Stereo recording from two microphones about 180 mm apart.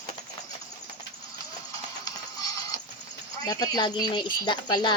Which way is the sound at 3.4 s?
20° left (ahead or behind).